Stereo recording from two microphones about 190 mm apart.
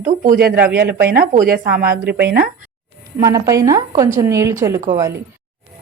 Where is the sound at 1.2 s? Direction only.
45° right (ahead or behind).